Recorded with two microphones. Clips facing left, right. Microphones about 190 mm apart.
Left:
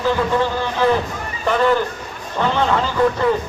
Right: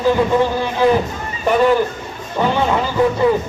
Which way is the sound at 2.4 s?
15° right (ahead or behind).